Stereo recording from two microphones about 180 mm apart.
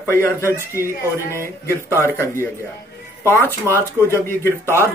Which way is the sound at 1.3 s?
15° left (ahead or behind).